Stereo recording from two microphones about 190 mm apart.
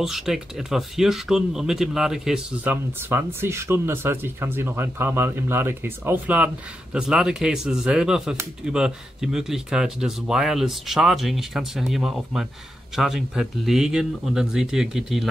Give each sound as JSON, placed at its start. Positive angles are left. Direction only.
{"t": 0.0, "sound": "speech", "side_deg": 0}